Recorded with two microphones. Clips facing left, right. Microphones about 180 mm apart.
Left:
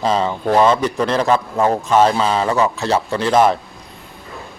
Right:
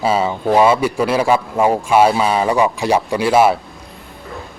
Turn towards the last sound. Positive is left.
turn(degrees=-10)  # may be behind; listen again after turning